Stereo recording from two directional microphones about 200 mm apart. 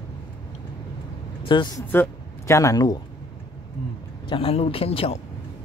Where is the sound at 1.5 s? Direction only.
20° left (ahead or behind).